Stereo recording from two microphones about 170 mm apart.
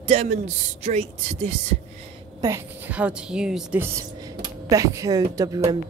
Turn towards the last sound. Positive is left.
turn(degrees=-20)  # may be behind; listen again after turning